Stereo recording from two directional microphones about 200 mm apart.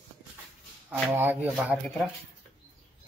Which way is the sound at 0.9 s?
10° right (ahead or behind).